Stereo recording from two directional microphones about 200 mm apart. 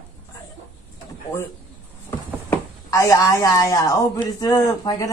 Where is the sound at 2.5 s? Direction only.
15° left (ahead or behind).